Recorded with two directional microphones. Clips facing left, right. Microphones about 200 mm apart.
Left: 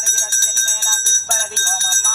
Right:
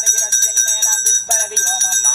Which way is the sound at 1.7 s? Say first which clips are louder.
Right 1 dB; 25° right (ahead or behind).